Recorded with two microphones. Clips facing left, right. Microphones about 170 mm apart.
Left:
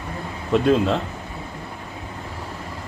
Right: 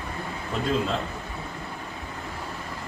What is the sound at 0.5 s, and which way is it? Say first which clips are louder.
Speech: left 11 dB; 75° left (ahead or behind).